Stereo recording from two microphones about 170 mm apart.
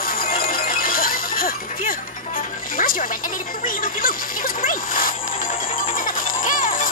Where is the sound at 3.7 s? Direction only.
55° left (ahead or behind).